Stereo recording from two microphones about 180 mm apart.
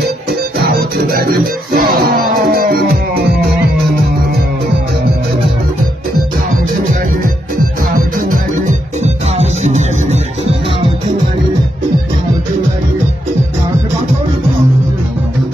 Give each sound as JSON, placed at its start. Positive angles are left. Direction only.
{"t": 0.7, "sound": "music", "side_deg": -55}
{"t": 7.9, "sound": "music", "side_deg": -50}